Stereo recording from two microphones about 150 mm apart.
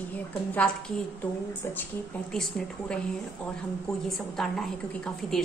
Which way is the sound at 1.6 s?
15° left (ahead or behind).